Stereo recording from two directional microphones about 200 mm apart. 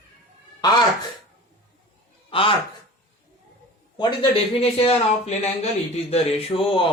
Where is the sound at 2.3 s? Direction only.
25° left (ahead or behind).